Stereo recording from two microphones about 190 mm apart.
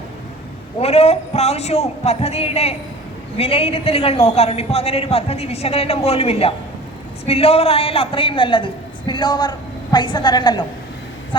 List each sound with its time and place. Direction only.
0.8 s a man's voice: 35° left (ahead or behind)